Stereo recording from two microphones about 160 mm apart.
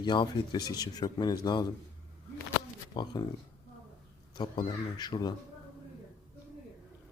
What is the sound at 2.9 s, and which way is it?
Speech, 30° left (ahead or behind).